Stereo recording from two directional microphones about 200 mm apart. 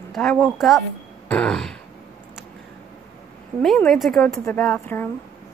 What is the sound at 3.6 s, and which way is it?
Speech, centre (ahead or behind).